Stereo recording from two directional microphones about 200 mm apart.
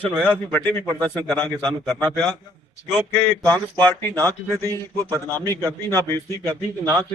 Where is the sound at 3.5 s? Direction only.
20° right (ahead or behind).